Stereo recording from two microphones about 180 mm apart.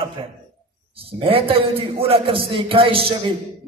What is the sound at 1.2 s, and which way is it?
A man's voice, 30° right (ahead or behind).